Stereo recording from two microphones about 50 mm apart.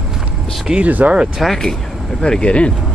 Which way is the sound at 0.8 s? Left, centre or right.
Right.